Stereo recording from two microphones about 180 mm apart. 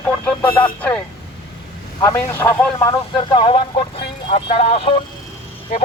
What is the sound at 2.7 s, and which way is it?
Speech, 25° left (ahead or behind).